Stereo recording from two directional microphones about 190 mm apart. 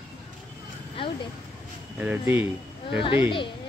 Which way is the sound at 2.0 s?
10° right (ahead or behind).